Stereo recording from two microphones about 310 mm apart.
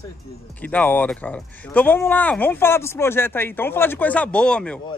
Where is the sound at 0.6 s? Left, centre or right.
Centre.